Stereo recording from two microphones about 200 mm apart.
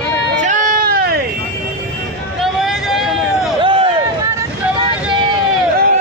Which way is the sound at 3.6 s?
25° right (ahead or behind).